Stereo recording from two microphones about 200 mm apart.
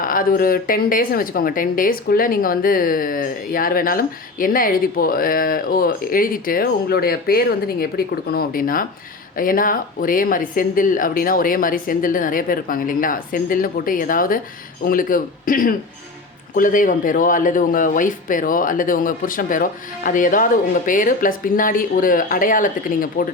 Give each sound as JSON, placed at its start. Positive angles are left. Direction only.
{"t": 0.0, "sound": "a woman's voice", "side_deg": 45}